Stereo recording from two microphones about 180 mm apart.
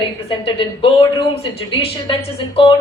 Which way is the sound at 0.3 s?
30° left (ahead or behind).